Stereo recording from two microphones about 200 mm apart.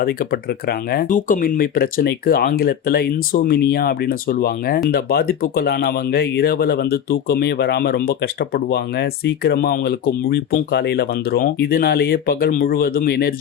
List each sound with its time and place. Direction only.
0.0 s speech: 50° left (ahead or behind)